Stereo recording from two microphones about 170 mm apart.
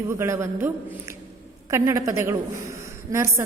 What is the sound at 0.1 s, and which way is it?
A woman's voice, 15° right (ahead or behind).